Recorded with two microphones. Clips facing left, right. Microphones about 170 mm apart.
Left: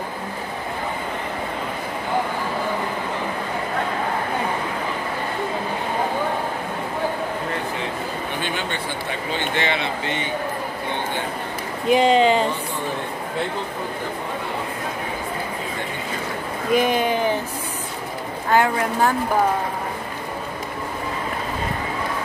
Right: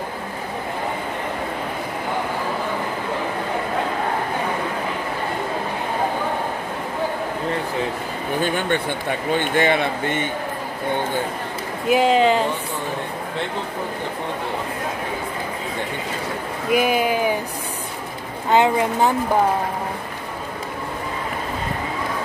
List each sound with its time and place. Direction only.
8.4 s a man's voice: 50° right (ahead or behind)
11.9 s speech: 5° right (ahead or behind)
16.7 s speech: 10° right (ahead or behind)
18.5 s speech: 20° right (ahead or behind)